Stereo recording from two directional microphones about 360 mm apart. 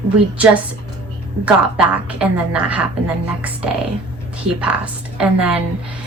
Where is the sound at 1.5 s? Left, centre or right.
Centre.